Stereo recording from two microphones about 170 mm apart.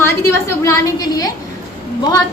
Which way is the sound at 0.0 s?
15° left (ahead or behind).